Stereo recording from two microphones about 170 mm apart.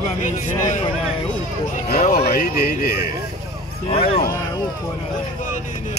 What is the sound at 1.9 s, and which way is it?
A man's voice, 60° left (ahead or behind).